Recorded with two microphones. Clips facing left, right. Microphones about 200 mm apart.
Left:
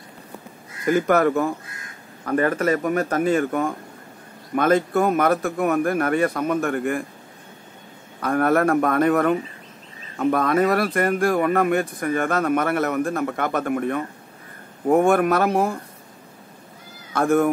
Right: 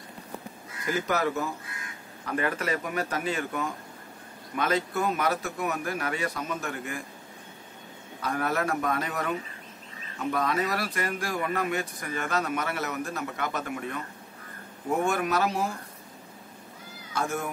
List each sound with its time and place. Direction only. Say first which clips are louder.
0.8 s speech: left 9 dB; 55° left (ahead or behind)
8.2 s speech: left 10 dB; 55° left (ahead or behind)
17.1 s speech: left 12 dB; 55° left (ahead or behind)